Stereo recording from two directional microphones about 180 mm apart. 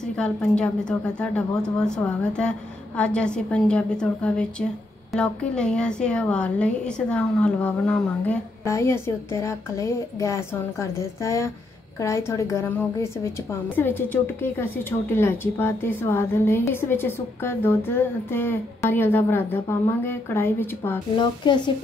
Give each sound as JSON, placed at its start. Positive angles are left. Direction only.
{"t": 0.0, "sound": "a woman's voice", "side_deg": 5}
{"t": 21.2, "sound": "a woman's voice", "side_deg": 25}